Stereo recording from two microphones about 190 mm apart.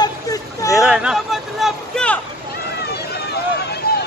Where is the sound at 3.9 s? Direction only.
55° left (ahead or behind).